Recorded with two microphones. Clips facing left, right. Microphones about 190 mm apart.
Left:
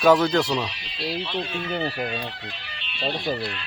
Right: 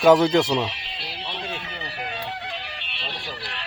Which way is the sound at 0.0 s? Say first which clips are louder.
Right 2 dB; 20° right (ahead or behind).